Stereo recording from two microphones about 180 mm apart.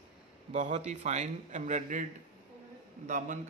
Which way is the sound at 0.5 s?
40° right (ahead or behind).